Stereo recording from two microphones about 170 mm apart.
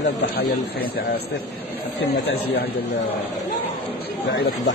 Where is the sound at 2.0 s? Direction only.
85° left.